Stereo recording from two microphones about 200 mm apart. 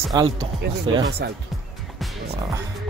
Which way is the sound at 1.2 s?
55° right (ahead or behind).